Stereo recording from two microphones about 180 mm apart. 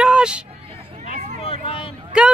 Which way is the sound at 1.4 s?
30° left (ahead or behind).